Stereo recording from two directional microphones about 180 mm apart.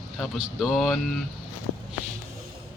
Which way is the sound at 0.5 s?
Centre (ahead or behind).